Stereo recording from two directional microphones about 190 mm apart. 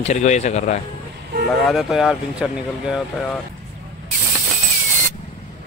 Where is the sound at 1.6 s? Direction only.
Centre (ahead or behind).